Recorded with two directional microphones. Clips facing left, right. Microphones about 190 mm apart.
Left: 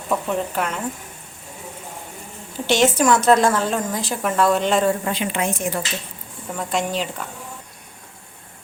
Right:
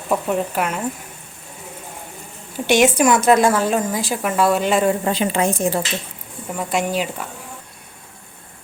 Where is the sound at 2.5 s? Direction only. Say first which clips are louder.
Right 3 dB; 15° right (ahead or behind).